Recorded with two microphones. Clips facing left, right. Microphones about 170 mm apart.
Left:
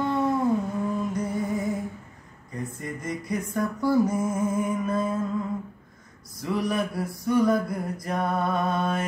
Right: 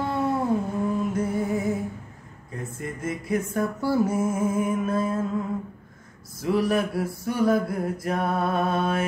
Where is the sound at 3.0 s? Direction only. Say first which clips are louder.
Right 4 dB; 5° right (ahead or behind).